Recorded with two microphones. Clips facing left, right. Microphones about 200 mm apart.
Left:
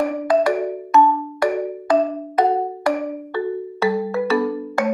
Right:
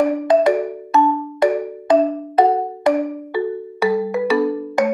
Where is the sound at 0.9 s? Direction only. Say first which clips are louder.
Even; 25° right (ahead or behind).